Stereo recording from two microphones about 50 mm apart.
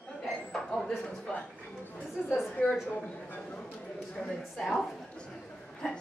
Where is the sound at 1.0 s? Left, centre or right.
Centre.